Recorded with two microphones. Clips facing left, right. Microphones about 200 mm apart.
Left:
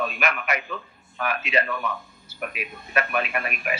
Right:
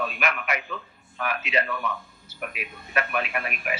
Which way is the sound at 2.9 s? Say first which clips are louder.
Left 2 dB; 50° left (ahead or behind).